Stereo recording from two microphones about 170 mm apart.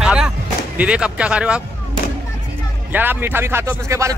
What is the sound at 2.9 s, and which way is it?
A man's voice, 10° right (ahead or behind).